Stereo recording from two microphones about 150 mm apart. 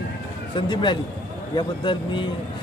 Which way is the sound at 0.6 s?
30° left (ahead or behind).